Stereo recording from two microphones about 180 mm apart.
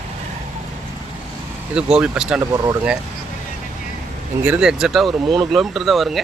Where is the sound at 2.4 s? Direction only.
20° right (ahead or behind).